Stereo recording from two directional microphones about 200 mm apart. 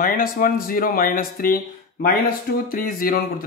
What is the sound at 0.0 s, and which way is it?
Speech, 45° left (ahead or behind).